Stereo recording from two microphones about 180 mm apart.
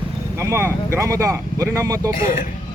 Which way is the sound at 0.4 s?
15° right (ahead or behind).